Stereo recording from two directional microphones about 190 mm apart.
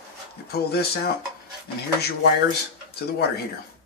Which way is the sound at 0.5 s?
55° left (ahead or behind).